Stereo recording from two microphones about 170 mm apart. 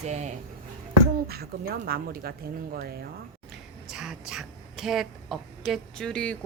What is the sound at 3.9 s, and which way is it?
A woman's voice, 5° right (ahead or behind).